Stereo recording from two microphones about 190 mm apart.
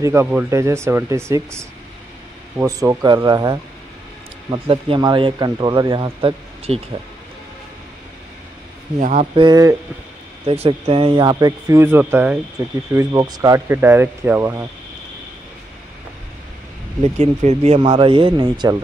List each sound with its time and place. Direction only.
0.0 s speech: 10° right (ahead or behind); by 6.8 s 30° right (ahead or behind)
9.0 s speech: 40° right (ahead or behind)
9.3 s speech: 20° right (ahead or behind)
10.4 s speech: 30° right (ahead or behind); by 14.7 s 15° right (ahead or behind)
17.0 s speech: 35° right (ahead or behind)